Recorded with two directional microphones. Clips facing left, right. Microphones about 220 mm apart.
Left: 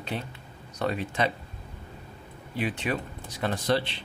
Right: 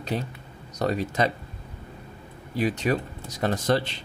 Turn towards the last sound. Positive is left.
turn(degrees=-45)  # may be behind; listen again after turning